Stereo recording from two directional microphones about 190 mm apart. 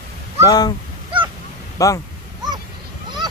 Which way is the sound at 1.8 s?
15° left (ahead or behind).